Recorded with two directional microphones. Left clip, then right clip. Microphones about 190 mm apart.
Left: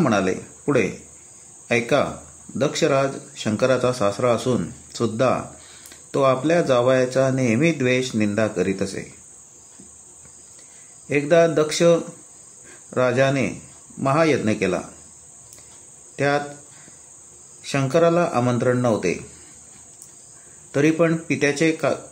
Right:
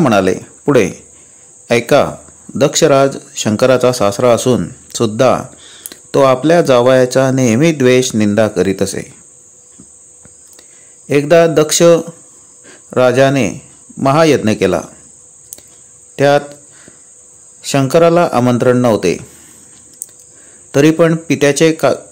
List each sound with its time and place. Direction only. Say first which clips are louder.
0.0 s speech: right 9 dB; 50° right (ahead or behind)
11.1 s speech: right 8 dB; 50° right (ahead or behind)
16.2 s speech: right 11 dB; 45° right (ahead or behind)
17.6 s speech: right 9 dB; 50° right (ahead or behind)
20.7 s speech: right 9 dB; 50° right (ahead or behind)